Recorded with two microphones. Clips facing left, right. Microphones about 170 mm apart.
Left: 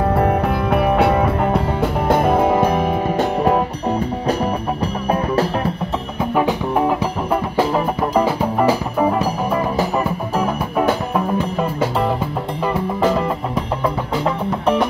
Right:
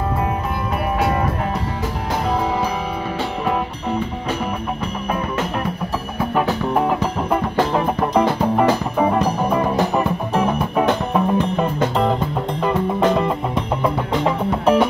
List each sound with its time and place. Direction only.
0.2 s music: 60° left (ahead or behind); by 3.6 s 40° left (ahead or behind)
7.5 s music: 5° left (ahead or behind)
14.1 s music: centre (ahead or behind)